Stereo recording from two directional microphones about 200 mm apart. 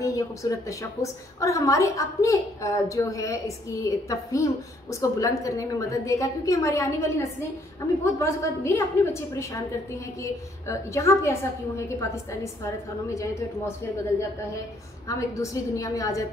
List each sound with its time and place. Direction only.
0.0 s a woman's voice: 15° left (ahead or behind)
13.1 s a woman's voice: 15° left (ahead or behind)
15.0 s a woman's voice: 15° left (ahead or behind)